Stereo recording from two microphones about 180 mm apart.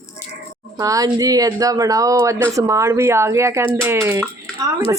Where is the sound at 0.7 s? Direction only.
20° right (ahead or behind).